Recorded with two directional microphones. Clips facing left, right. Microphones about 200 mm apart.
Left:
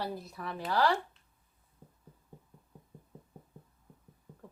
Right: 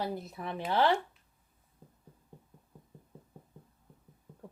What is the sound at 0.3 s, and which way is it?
Speech, 20° right (ahead or behind).